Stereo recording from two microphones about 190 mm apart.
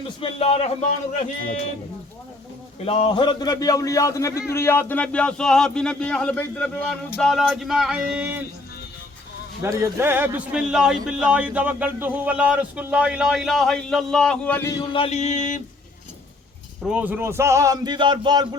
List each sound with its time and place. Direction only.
0.2 s mantra: 30° left (ahead or behind)
2.8 s a man's voice: 30° left (ahead or behind); by 8.4 s 5° right (ahead or behind)
9.6 s speech: 15° right (ahead or behind); by 14.8 s 15° left (ahead or behind)
14.9 s mantra: 35° left (ahead or behind)
16.9 s a man's voice: 10° right (ahead or behind)